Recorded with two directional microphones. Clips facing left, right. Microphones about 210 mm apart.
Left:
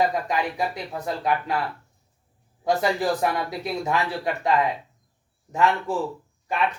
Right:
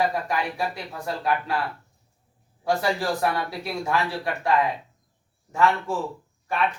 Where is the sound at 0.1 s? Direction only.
20° left (ahead or behind).